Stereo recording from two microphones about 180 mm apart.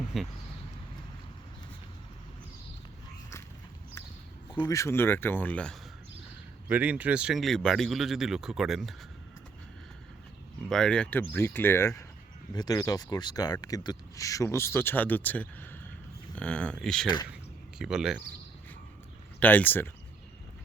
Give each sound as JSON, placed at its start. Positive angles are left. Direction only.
{"t": 0.1, "sound": "speech", "side_deg": 0}
{"t": 4.5, "sound": "speech", "side_deg": 15}
{"t": 6.7, "sound": "speech", "side_deg": -10}
{"t": 10.7, "sound": "speech", "side_deg": 5}
{"t": 19.4, "sound": "speech", "side_deg": 10}